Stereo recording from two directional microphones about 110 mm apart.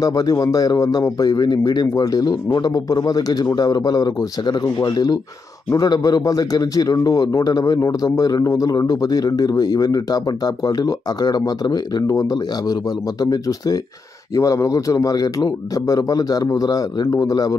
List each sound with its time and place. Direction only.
0.0 s a man's voice: 35° left (ahead or behind)